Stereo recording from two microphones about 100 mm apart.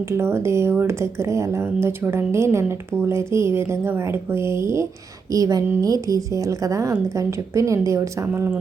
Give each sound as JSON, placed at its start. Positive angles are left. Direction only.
{"t": 0.1, "sound": "a woman's voice", "side_deg": -25}
{"t": 8.3, "sound": "speech", "side_deg": -15}